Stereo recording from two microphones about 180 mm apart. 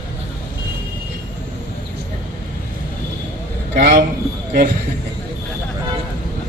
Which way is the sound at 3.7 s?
70° right (ahead or behind).